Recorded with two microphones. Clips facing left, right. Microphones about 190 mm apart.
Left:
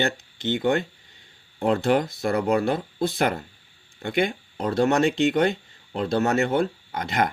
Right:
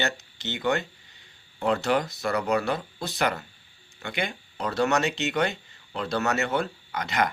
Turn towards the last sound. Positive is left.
turn(degrees=50)  # may be behind; listen again after turning